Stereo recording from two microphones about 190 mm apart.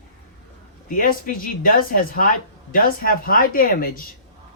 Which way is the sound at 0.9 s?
45° left (ahead or behind).